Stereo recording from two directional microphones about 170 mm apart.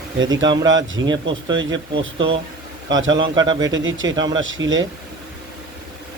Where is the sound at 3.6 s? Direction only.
90° right.